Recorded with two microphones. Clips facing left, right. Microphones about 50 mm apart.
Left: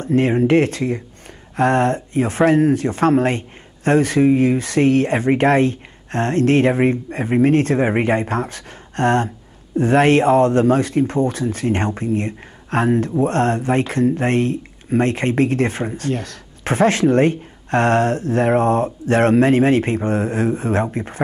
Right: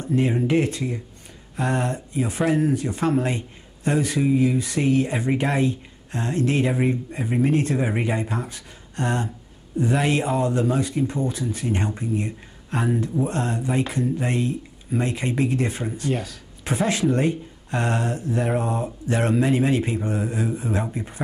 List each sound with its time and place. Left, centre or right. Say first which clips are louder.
0.0 s speech: left 6 dB; left
16.1 s speech: even; centre
16.6 s speech: left 7 dB; left